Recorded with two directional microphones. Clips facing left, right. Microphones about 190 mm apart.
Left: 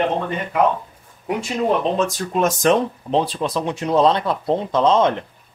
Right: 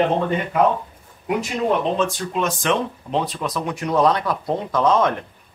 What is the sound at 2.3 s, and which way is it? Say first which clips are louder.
Speech: left 5 dB; 40° left (ahead or behind).